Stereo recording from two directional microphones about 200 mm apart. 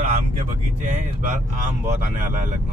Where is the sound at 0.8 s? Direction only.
40° right (ahead or behind).